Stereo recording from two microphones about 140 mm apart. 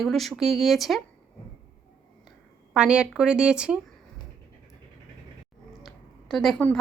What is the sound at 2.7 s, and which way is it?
Speech, 5° right (ahead or behind).